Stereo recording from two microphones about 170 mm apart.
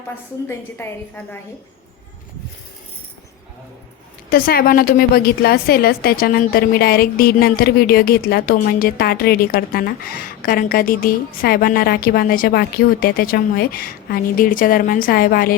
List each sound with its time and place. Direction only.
0.4 s a woman's voice: 15° left (ahead or behind)
4.3 s a woman's voice: 60° left (ahead or behind)